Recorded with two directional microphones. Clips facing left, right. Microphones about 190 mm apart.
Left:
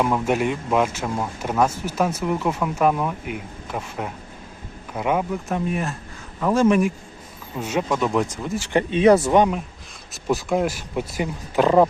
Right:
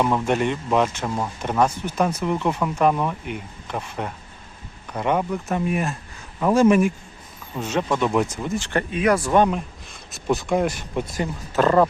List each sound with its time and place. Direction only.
0.0 s speech: 5° left (ahead or behind)
7.5 s speech: 10° left (ahead or behind)
8.5 s speech: 10° left (ahead or behind)
8.9 s speech: 25° left (ahead or behind)
10.1 s speech: centre (ahead or behind)